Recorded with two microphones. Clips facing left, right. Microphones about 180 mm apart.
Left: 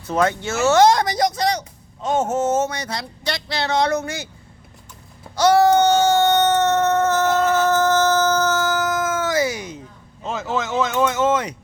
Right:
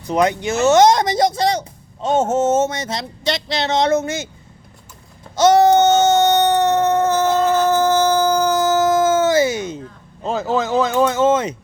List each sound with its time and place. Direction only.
0.0 s speech: 15° right (ahead or behind)
5.4 s baby cry: 20° right (ahead or behind)
7.5 s a sound: 15° right (ahead or behind)
10.2 s speech: 35° right (ahead or behind)